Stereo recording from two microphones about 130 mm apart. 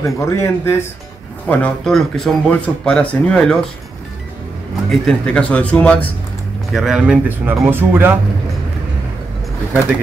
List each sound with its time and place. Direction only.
0.0 s speech: 20° left (ahead or behind)
1.5 s speech: 5° left (ahead or behind)
4.8 s speech: 5° left (ahead or behind)
6.7 s speech: 5° right (ahead or behind)